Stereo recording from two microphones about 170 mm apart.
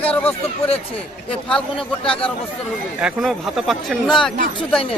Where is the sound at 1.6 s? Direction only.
30° left (ahead or behind).